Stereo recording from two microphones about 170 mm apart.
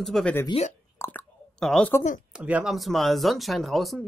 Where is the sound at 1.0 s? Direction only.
10° left (ahead or behind).